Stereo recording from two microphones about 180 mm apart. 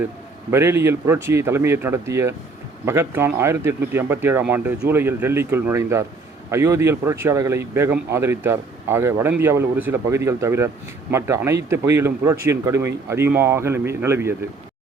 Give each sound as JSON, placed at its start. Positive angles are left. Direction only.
{"t": 0.5, "sound": "speech", "side_deg": -15}